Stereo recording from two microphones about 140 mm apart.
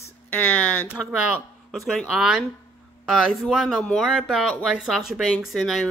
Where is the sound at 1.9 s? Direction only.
Centre (ahead or behind).